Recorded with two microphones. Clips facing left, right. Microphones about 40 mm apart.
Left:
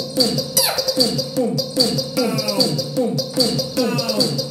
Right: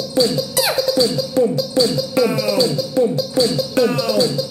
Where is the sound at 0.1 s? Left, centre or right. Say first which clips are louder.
Right 3 dB; right.